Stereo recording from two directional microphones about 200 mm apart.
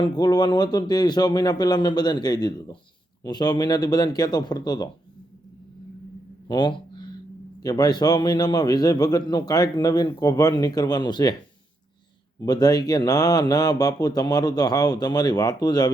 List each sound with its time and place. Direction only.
0.0 s a man's voice: 20° left (ahead or behind)
6.5 s a sound: 20° left (ahead or behind)
7.6 s a man's voice: 20° left (ahead or behind)
12.4 s a man's voice: 20° left (ahead or behind)